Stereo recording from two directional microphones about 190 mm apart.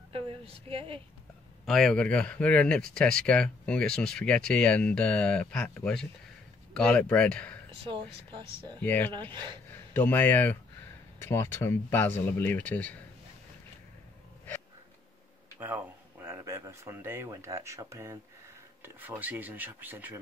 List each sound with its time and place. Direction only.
0.1 s a sound: 30° right (ahead or behind)
1.7 s speech: centre (ahead or behind)
7.7 s speech: 30° right (ahead or behind)
8.7 s speech: 10° left (ahead or behind)
9.3 s speech: 25° right (ahead or behind)
9.9 s speech: 10° left (ahead or behind)
15.6 s speech: 10° right (ahead or behind)